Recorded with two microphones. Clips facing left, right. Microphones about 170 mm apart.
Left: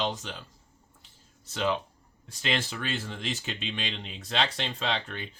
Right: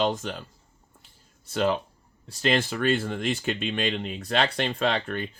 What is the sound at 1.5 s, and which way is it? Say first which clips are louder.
Speech: right 4 dB; 50° right (ahead or behind).